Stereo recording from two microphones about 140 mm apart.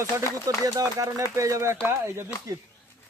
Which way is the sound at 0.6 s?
25° right (ahead or behind).